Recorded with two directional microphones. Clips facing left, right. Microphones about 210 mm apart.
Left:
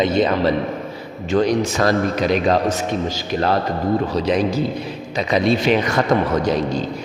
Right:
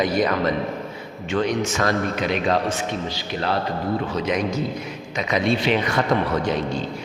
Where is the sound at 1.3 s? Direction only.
35° left (ahead or behind).